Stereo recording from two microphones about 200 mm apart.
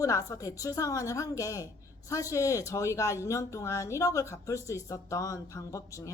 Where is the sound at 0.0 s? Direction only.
15° left (ahead or behind).